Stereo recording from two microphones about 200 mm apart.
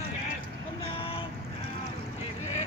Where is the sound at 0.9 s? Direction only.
30° left (ahead or behind).